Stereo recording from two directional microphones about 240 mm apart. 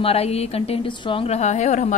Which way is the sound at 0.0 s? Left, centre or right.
Left.